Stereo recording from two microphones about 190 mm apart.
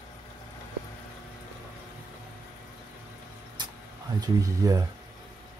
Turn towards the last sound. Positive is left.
turn(degrees=-15)  # may be behind; listen again after turning